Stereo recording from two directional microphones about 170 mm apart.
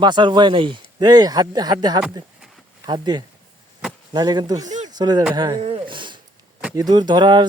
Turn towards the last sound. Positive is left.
turn(degrees=-25)  # may be behind; listen again after turning